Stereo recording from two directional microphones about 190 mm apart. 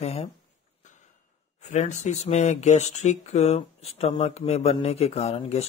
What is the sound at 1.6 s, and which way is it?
Speech, 40° left (ahead or behind).